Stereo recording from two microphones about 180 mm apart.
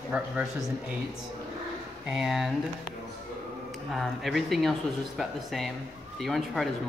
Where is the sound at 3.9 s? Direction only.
Centre (ahead or behind).